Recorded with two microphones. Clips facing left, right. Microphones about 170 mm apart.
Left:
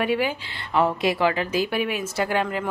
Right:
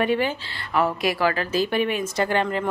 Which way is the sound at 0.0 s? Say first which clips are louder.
Right 1 dB; 10° left (ahead or behind).